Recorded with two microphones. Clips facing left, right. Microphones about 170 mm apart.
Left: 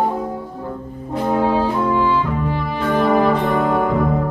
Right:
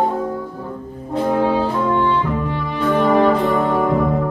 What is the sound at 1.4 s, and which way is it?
Brass instrument, 10° left (ahead or behind).